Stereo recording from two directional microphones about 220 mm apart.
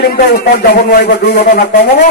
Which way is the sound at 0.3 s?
45° left (ahead or behind).